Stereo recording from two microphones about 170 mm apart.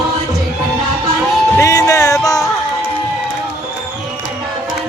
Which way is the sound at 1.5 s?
20° left (ahead or behind).